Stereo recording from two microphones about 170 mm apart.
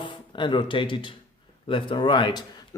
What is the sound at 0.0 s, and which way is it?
Speech, 30° left (ahead or behind).